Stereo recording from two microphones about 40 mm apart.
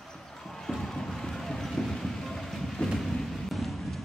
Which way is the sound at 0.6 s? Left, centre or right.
Centre.